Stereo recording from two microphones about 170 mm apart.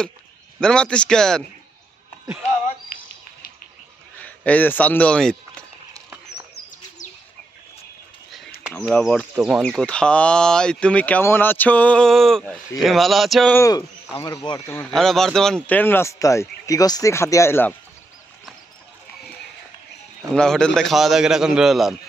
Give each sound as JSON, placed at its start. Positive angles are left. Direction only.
{"t": 0.6, "sound": "speech", "side_deg": 5}
{"t": 4.2, "sound": "speech", "side_deg": 10}
{"t": 8.7, "sound": "speech", "side_deg": 5}
{"t": 13.6, "sound": "speech", "side_deg": 20}
{"t": 14.7, "sound": "speech", "side_deg": 15}
{"t": 15.0, "sound": "speech", "side_deg": 0}
{"t": 20.3, "sound": "speech", "side_deg": 5}